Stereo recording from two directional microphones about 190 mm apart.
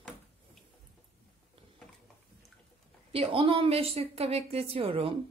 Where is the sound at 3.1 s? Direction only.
30° right (ahead or behind).